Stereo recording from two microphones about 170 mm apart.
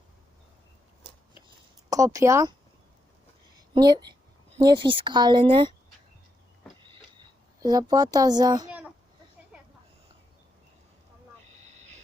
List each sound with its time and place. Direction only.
1.9 s speech: 20° right (ahead or behind)
3.8 s speech: 25° right (ahead or behind)
7.6 s speech: 20° right (ahead or behind)
9.5 s a sound: 5° right (ahead or behind)
11.6 s vehicle: 40° right (ahead or behind)